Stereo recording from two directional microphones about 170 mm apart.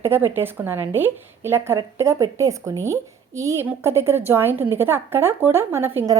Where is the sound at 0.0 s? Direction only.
15° right (ahead or behind).